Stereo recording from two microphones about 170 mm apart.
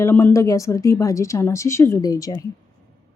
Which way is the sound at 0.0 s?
15° left (ahead or behind).